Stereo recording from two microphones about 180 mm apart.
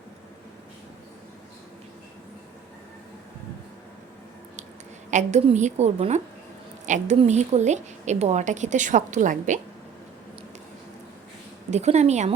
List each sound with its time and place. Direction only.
5.1 s a woman's voice: 40° right (ahead or behind)
11.7 s a woman's voice: 40° right (ahead or behind)